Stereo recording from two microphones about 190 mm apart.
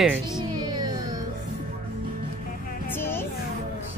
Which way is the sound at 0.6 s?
20° right (ahead or behind).